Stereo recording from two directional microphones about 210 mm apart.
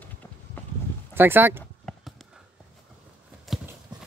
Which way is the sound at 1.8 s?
Centre (ahead or behind).